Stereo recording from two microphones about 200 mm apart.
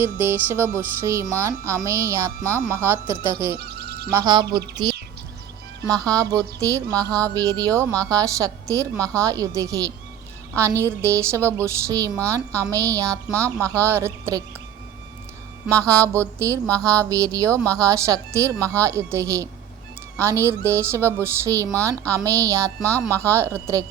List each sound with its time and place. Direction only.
0.0 s music: 10° right (ahead or behind)
3.6 s a sound: 55° right (ahead or behind)
4.1 s speech: 20° right (ahead or behind)
5.8 s music: 15° right (ahead or behind)
15.6 s music: 15° right (ahead or behind)